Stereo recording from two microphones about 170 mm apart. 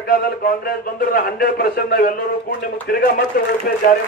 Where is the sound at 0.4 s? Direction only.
60° left (ahead or behind).